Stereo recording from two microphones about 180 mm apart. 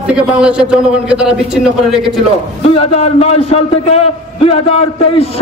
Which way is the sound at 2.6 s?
35° left (ahead or behind).